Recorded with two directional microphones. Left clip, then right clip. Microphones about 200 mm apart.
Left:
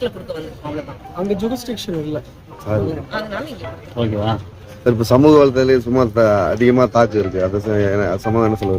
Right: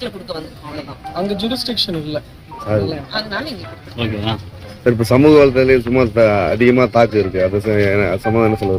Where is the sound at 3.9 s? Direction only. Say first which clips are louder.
Left 2 dB; 30° left (ahead or behind).